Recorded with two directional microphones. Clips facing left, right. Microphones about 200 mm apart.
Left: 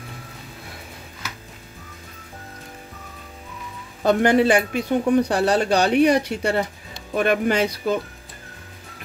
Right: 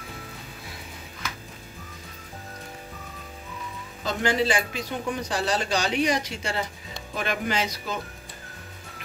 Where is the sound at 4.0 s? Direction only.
60° left (ahead or behind).